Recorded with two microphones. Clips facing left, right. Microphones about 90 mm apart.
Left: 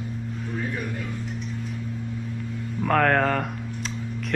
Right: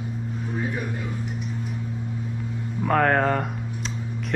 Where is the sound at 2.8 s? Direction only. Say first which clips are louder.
Even; 5° right (ahead or behind).